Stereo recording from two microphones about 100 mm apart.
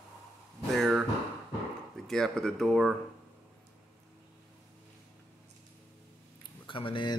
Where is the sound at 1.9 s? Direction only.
5° left (ahead or behind).